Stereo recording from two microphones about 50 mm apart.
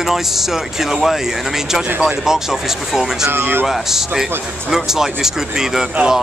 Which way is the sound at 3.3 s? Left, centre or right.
Right.